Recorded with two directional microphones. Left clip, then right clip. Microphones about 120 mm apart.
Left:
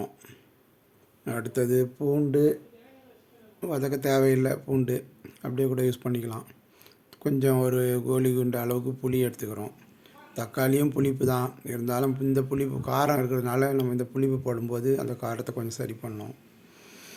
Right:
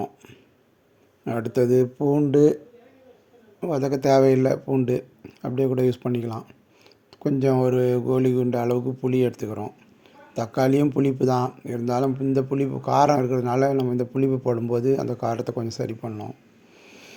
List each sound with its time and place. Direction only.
1.2 s speech: 35° right (ahead or behind)
3.6 s speech: 30° right (ahead or behind)
16.8 s a sound: 25° right (ahead or behind)